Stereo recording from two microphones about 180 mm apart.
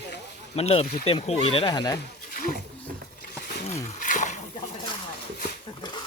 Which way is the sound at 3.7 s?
45° left (ahead or behind).